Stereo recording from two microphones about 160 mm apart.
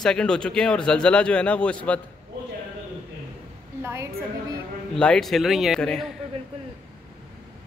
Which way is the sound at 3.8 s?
15° right (ahead or behind).